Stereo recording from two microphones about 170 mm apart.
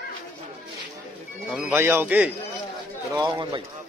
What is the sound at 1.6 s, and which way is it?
Speech, 15° right (ahead or behind).